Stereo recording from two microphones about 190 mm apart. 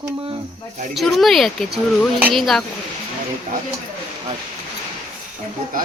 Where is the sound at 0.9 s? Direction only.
Centre (ahead or behind).